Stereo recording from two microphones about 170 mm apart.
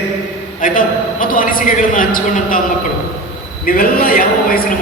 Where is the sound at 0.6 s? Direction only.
50° left (ahead or behind).